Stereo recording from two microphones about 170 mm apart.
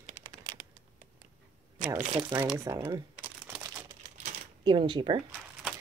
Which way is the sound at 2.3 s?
25° right (ahead or behind).